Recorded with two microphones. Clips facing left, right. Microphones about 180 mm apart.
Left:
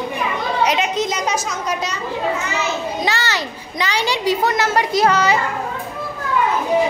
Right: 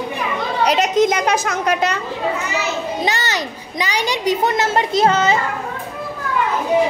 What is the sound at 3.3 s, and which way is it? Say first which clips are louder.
A child's voice: right 1 dB; 15° right (ahead or behind).